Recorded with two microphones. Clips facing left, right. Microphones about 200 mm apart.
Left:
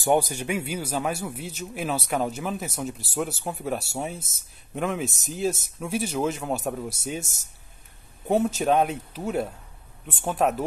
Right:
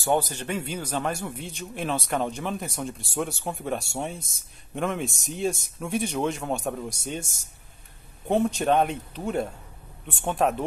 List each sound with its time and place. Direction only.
0.0 s a man's voice: 15° left (ahead or behind)
8.3 s a man's voice: 5° left (ahead or behind)